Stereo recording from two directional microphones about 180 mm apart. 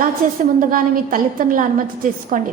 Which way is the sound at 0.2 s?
50° right (ahead or behind).